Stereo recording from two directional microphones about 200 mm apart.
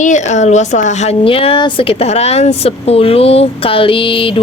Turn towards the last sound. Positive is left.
turn(degrees=25)  # may be behind; listen again after turning